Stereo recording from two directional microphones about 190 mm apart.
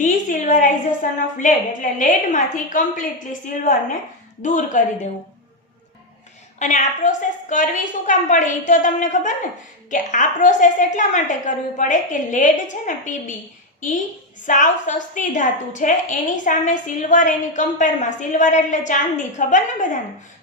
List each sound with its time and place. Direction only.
0.0 s a sound: 45° left (ahead or behind)
1.4 s a woman's voice: 45° left (ahead or behind)
6.6 s a woman's voice: 40° left (ahead or behind)